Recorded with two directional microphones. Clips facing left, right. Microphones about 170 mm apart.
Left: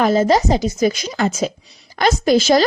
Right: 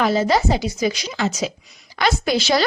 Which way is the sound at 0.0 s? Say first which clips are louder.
Left 3 dB; 45° left (ahead or behind).